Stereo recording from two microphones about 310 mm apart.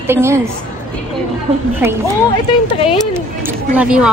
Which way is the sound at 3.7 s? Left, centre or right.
Centre.